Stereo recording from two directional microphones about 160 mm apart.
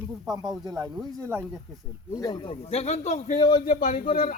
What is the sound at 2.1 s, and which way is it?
A man's voice, 25° left (ahead or behind).